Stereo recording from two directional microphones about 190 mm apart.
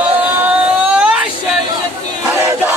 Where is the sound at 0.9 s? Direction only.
5° right (ahead or behind).